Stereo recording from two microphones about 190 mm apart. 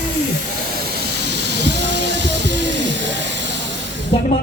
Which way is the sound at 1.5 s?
65° right (ahead or behind).